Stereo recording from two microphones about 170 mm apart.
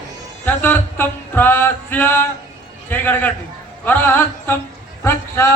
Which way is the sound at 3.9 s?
10° left (ahead or behind).